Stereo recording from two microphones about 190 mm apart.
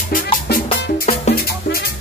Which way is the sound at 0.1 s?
50° left (ahead or behind).